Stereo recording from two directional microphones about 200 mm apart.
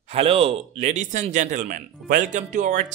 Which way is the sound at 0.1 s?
30° right (ahead or behind).